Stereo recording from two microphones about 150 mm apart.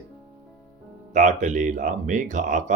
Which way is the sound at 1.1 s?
55° right (ahead or behind).